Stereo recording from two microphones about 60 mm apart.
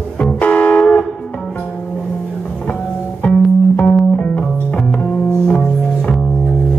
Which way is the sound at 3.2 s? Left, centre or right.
Centre.